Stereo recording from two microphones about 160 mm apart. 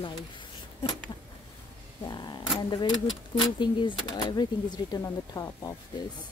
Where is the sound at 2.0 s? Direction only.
25° left (ahead or behind).